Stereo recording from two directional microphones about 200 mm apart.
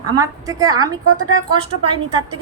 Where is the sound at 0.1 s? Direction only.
15° right (ahead or behind).